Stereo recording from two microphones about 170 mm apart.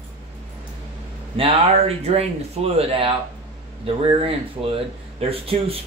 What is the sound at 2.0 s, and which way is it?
Speech, 40° right (ahead or behind).